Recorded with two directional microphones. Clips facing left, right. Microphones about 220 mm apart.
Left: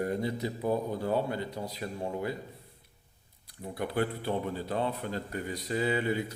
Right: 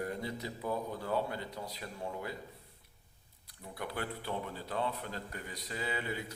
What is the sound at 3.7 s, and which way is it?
Speech, 30° left (ahead or behind).